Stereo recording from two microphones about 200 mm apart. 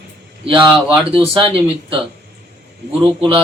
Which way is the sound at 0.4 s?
25° right (ahead or behind).